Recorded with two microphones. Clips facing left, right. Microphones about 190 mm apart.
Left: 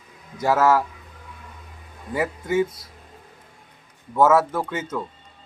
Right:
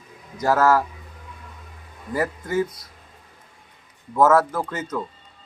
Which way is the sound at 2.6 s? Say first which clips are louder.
Even; 25° left (ahead or behind).